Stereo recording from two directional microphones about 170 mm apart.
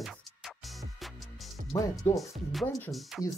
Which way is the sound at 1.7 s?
20° left (ahead or behind).